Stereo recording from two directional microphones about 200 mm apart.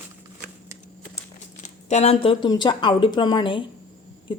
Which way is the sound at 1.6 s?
35° left (ahead or behind).